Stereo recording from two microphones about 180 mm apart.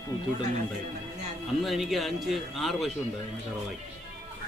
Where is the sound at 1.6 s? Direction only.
Centre (ahead or behind).